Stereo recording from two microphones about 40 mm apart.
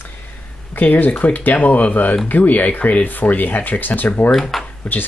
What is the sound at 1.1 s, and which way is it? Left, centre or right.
Speech, left.